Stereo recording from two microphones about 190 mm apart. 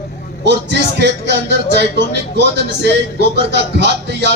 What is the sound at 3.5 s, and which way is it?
Speech, 65° right (ahead or behind).